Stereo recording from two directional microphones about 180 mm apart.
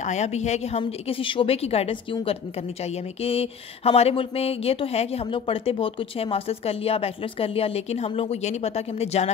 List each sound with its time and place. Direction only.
0.0 s speech: 40° left (ahead or behind)
3.2 s speech: 35° left (ahead or behind)